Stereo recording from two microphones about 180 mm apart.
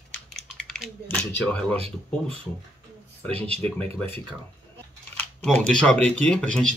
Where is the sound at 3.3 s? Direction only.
35° right (ahead or behind).